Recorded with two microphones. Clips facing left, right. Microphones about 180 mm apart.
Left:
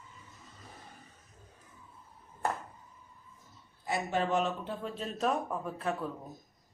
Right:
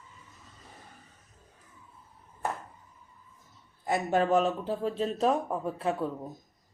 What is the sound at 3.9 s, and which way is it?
Speech, 45° right (ahead or behind).